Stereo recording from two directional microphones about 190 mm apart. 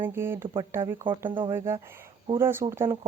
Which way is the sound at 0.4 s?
25° right (ahead or behind).